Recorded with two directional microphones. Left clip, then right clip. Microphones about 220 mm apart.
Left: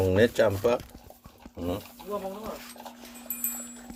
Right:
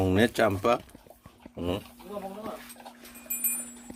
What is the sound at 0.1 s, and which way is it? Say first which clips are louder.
Speech: left 2 dB; 25° right (ahead or behind).